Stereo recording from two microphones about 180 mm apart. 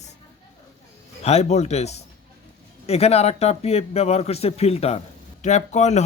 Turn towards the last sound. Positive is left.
turn(degrees=40)  # may be behind; listen again after turning